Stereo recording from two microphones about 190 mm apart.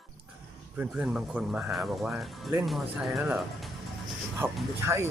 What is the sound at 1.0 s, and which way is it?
Speech, 5° right (ahead or behind).